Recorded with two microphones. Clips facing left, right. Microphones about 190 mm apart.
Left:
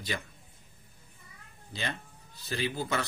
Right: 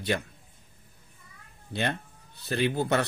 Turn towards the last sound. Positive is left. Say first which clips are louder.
# right 6 dB
turn(degrees=-60)  # may be behind; listen again after turning